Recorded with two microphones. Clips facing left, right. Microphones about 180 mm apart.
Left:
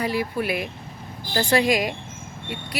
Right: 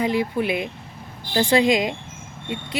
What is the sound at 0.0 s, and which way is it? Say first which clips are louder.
Speech: right 3 dB; 20° right (ahead or behind).